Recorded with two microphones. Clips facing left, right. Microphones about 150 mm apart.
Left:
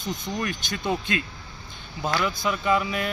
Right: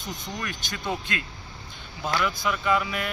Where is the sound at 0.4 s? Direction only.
20° left (ahead or behind).